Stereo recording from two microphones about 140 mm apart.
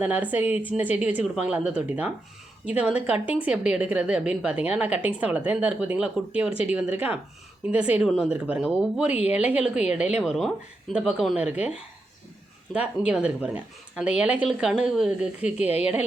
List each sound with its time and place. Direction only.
0.0 s a woman's voice: 10° right (ahead or behind)
6.5 s speech: 45° left (ahead or behind)
6.7 s a woman's voice: 10° right (ahead or behind)
12.7 s a woman's voice: 10° right (ahead or behind)